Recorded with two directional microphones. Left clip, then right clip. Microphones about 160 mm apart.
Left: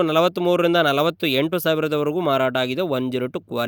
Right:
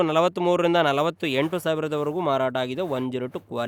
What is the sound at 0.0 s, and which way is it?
Speech, 40° left (ahead or behind).